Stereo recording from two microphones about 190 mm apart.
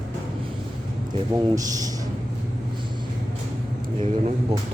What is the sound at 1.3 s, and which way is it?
Speech, 20° right (ahead or behind).